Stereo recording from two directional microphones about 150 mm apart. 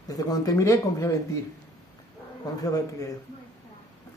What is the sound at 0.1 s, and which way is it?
Speech, 25° left (ahead or behind).